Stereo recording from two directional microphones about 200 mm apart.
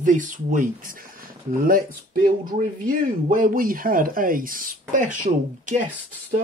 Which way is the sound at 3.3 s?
45° right (ahead or behind).